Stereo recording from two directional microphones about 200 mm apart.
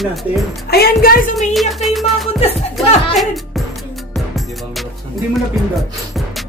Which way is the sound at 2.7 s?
Centre (ahead or behind).